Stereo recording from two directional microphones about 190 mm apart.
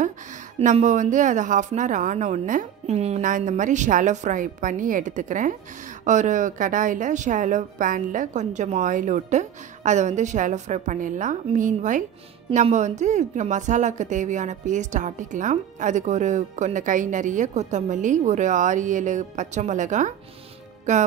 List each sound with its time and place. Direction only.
0.6 s a woman's voice: 35° right (ahead or behind)